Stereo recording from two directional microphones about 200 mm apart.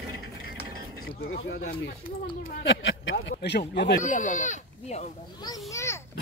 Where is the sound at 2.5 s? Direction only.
60° left (ahead or behind).